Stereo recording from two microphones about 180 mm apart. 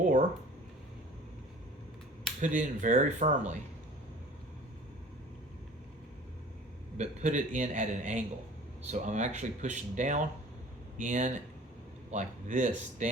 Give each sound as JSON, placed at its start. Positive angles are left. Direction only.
{"t": 0.0, "sound": "a sound", "side_deg": -45}
{"t": 2.4, "sound": "a man's voice", "side_deg": -45}
{"t": 6.9, "sound": "a man's voice", "side_deg": -40}